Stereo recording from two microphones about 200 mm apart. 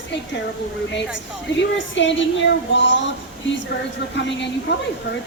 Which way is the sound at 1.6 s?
65° left (ahead or behind).